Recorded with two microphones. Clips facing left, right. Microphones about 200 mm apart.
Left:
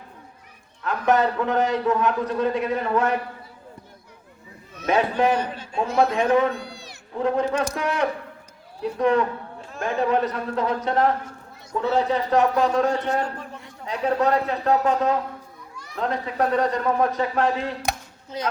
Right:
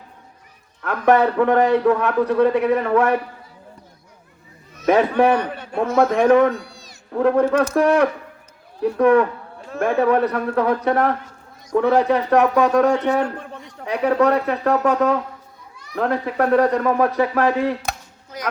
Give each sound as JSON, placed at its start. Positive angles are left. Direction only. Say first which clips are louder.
{"t": 0.8, "sound": "a man's voice", "louder": "right 4 dB", "side_deg": -65}
{"t": 4.9, "sound": "a man's voice", "louder": "right 5 dB", "side_deg": -60}
{"t": 6.6, "sound": "cat", "louder": "left 3 dB", "side_deg": 65}
{"t": 7.1, "sound": "a man's voice", "louder": "right 6 dB", "side_deg": -65}
{"t": 18.3, "sound": "speech", "louder": "left 1 dB", "side_deg": 25}